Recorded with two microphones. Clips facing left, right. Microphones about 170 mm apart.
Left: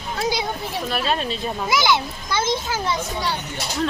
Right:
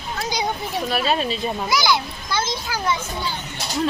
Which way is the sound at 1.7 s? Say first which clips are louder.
Left 2 dB; 20° left (ahead or behind).